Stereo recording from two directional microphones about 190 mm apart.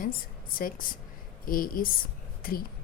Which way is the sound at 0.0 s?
50° left (ahead or behind).